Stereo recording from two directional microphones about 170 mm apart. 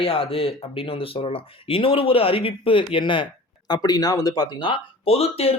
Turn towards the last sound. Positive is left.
turn(degrees=35)  # may be behind; listen again after turning